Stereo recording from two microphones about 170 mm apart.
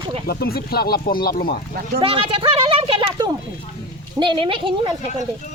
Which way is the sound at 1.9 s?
30° right (ahead or behind).